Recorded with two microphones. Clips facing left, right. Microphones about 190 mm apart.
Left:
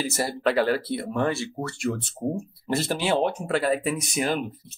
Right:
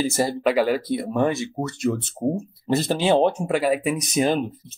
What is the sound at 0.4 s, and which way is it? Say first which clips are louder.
Speech: even; 10° right (ahead or behind).